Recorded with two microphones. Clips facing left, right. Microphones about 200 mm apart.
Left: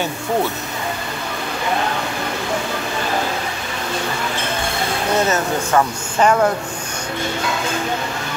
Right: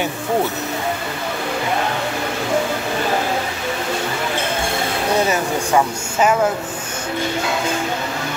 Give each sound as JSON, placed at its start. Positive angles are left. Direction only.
{"t": 5.3, "sound": "speech", "side_deg": -10}